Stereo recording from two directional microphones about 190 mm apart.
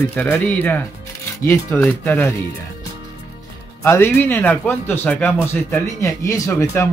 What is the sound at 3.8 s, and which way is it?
Speech, 10° left (ahead or behind).